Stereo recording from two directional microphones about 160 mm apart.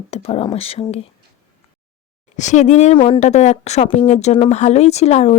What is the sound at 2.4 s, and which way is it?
A woman's voice, 50° left (ahead or behind).